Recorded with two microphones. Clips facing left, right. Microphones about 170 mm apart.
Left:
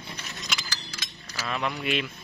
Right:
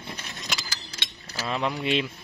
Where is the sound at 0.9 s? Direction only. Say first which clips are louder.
Right 2 dB; 30° right (ahead or behind).